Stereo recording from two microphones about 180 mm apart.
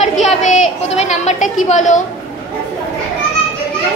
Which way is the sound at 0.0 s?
40° left (ahead or behind).